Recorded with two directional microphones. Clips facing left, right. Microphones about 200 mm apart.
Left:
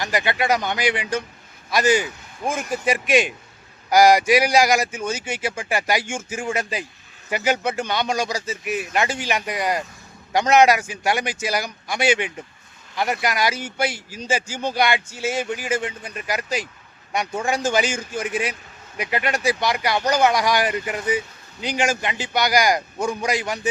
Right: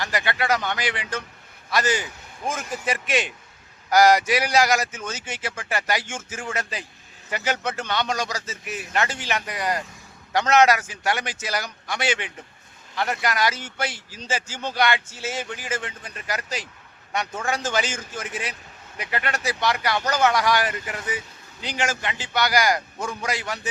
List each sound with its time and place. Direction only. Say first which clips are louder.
0.0 s speech: left 3 dB; 15° left (ahead or behind)